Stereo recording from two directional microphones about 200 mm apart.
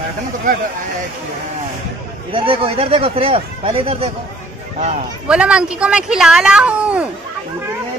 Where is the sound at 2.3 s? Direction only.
25° right (ahead or behind).